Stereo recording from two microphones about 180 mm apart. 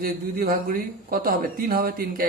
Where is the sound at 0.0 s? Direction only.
55° right (ahead or behind).